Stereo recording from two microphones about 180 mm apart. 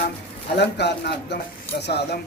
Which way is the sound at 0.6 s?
70° left (ahead or behind).